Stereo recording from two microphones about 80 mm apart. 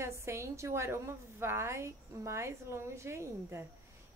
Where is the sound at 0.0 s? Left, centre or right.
Right.